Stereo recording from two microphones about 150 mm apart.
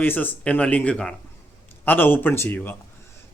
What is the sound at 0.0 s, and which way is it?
Speech, 10° left (ahead or behind).